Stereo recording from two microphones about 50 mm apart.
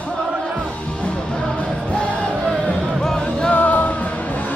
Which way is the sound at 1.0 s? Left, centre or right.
Left.